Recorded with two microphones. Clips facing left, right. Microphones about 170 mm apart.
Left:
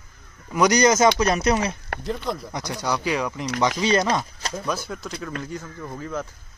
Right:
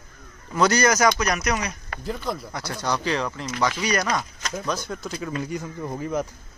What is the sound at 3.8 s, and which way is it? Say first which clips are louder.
Speech: left 4 dB; 25° left (ahead or behind).